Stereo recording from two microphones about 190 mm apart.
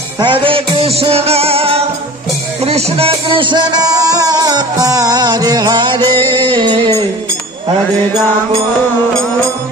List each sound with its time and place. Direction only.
0.2 s music: 25° right (ahead or behind)